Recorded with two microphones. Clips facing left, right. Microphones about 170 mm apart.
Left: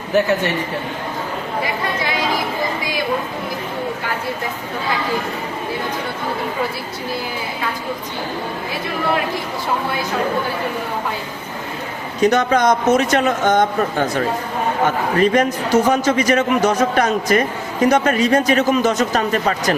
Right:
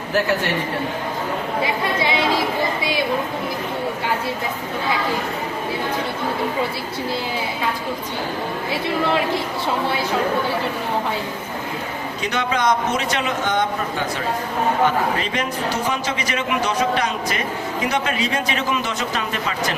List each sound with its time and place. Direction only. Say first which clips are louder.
12.2 s a man's voice: left 7 dB; 45° left (ahead or behind)
14.8 s a man's voice: left 4 dB; 45° left (ahead or behind)